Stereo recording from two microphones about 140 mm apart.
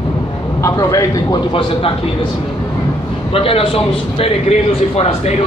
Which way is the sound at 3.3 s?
40° left (ahead or behind).